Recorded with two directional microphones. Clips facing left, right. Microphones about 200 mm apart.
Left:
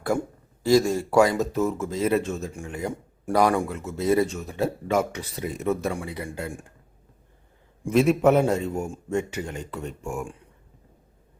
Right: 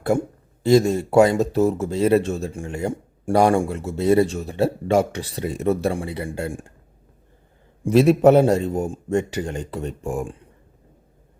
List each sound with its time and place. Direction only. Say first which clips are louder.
0.1 s speech: right 4 dB; 25° right (ahead or behind)
7.9 s speech: right 5 dB; 35° right (ahead or behind)